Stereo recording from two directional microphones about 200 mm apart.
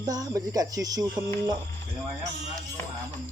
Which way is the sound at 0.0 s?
20° right (ahead or behind).